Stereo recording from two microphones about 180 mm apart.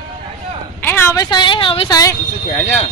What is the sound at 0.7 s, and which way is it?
A woman's voice, 10° left (ahead or behind).